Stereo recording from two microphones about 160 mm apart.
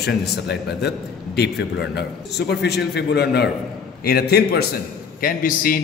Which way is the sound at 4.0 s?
80° left.